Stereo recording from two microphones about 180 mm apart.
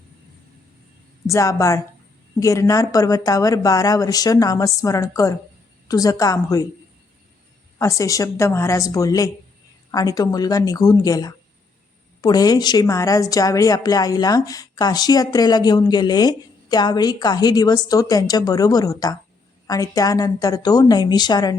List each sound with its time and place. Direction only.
1.3 s a woman's voice: 15° left (ahead or behind)
7.8 s a woman's voice: 15° left (ahead or behind)